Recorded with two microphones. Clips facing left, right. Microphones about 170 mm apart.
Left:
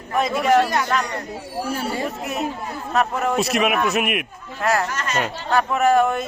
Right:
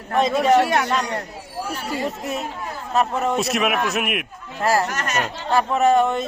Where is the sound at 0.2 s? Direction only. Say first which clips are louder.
Right 2 dB; 25° right (ahead or behind).